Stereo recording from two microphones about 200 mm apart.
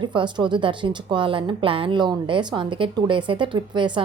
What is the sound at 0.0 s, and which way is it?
A woman's voice, 25° right (ahead or behind).